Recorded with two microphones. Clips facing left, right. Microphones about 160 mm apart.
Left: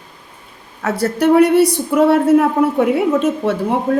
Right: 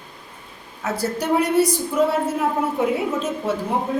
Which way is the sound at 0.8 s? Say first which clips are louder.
Left 8 dB; 70° left (ahead or behind).